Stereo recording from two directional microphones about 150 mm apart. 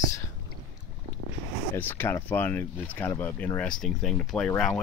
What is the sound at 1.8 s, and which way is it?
Speech, 15° left (ahead or behind).